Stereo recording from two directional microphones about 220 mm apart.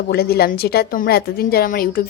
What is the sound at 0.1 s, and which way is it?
Speech, 45° left (ahead or behind).